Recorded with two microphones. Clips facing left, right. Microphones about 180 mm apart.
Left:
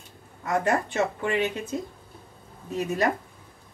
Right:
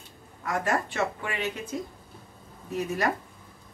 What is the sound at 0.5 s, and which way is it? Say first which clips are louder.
Speech: left 3 dB; 20° left (ahead or behind).